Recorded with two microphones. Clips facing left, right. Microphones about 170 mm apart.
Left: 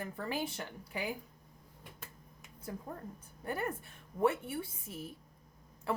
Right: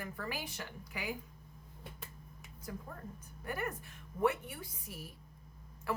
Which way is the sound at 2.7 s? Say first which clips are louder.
Left 3 dB; 30° left (ahead or behind).